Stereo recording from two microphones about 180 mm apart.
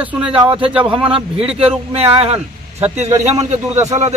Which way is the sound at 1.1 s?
30° right (ahead or behind).